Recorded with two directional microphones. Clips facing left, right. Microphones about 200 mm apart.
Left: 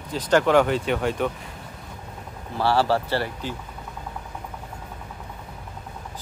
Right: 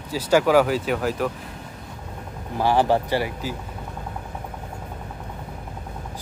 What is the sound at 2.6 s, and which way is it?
Speech, 15° right (ahead or behind).